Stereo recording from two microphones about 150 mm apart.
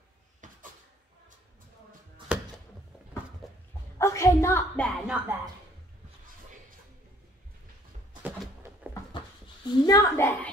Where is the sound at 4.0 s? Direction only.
20° left (ahead or behind).